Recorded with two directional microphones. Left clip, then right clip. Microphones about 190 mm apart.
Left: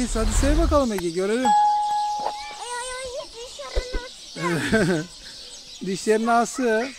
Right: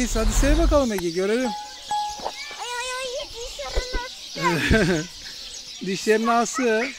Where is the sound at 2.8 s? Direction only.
45° right (ahead or behind).